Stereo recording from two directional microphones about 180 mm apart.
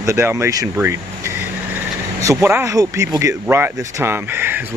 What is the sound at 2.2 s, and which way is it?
Speech, 15° right (ahead or behind).